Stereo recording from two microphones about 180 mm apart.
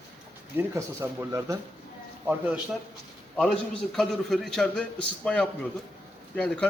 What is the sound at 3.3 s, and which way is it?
A man's voice, 5° left (ahead or behind).